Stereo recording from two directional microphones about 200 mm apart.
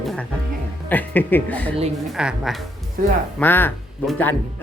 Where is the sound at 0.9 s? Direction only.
10° left (ahead or behind).